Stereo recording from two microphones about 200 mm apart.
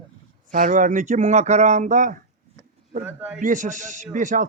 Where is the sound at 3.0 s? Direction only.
5° right (ahead or behind).